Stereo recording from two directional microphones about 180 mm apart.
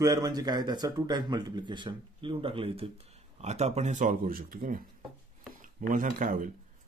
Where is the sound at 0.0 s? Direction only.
20° right (ahead or behind).